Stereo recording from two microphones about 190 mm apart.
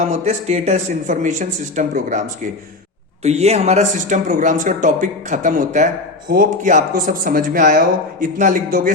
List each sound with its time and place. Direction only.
0.1 s speech: 35° right (ahead or behind)